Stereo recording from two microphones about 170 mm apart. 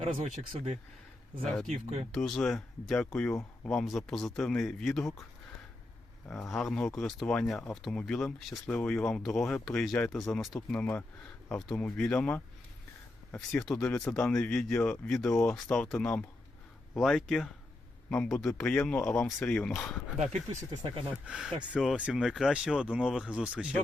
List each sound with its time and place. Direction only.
0.5 s speech: 35° right (ahead or behind)
1.4 s speech: 5° left (ahead or behind)
6.5 s speech: 5° left (ahead or behind)
20.5 s speech: 35° right (ahead or behind)
21.2 s speech: 5° right (ahead or behind)